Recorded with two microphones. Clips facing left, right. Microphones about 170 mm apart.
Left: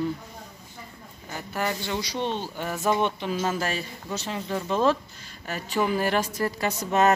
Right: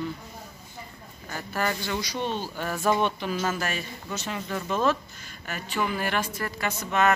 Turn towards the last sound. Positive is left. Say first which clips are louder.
# left 3 dB
turn(degrees=40)  # may be behind; listen again after turning